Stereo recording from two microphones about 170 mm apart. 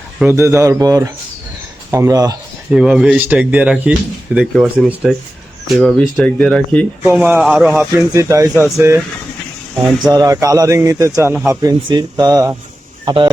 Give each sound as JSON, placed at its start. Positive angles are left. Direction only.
{"t": 0.2, "sound": "a man's voice", "side_deg": -15}
{"t": 2.7, "sound": "speech", "side_deg": -5}
{"t": 7.0, "sound": "speech", "side_deg": -10}
{"t": 7.8, "sound": "speech", "side_deg": -15}
{"t": 10.1, "sound": "a man's voice", "side_deg": -20}